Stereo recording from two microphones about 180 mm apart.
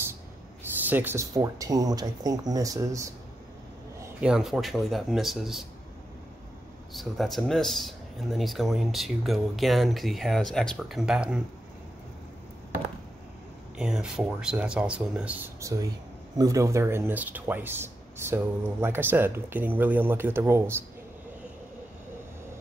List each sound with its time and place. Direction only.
0.8 s speech: 10° right (ahead or behind)
4.2 s speech: 5° right (ahead or behind)
6.9 s speech: centre (ahead or behind)
13.7 s speech: 5° right (ahead or behind)